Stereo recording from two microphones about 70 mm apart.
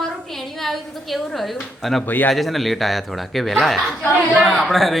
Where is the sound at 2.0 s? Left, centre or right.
Left.